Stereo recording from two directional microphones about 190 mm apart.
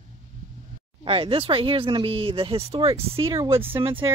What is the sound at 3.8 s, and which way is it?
Speech, 25° right (ahead or behind).